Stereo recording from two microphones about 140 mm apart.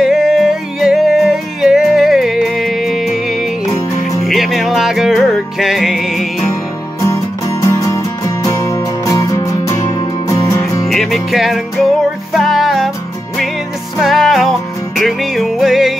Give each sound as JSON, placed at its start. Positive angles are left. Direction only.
{"t": 0.0, "sound": "music", "side_deg": 0}
{"t": 7.0, "sound": "music", "side_deg": 20}
{"t": 10.9, "sound": "music", "side_deg": 0}
{"t": 13.9, "sound": "music", "side_deg": 0}